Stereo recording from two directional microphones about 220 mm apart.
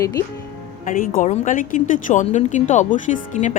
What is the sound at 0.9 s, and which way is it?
A woman's voice, 40° left (ahead or behind).